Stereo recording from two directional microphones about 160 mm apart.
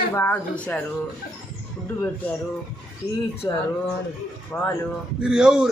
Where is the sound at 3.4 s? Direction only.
25° left (ahead or behind).